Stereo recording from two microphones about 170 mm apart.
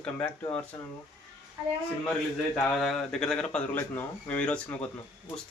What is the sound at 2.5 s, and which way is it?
Speech, 5° left (ahead or behind).